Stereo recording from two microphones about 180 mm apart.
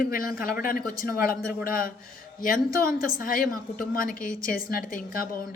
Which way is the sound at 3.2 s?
50° left (ahead or behind).